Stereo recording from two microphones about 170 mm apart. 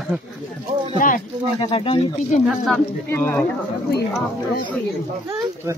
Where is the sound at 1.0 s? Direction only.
55° left (ahead or behind).